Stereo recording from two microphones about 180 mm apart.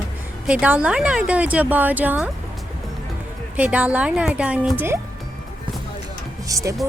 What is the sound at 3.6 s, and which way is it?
Speech, 10° right (ahead or behind).